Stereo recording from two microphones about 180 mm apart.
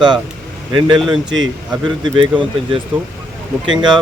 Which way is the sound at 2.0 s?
30° right (ahead or behind).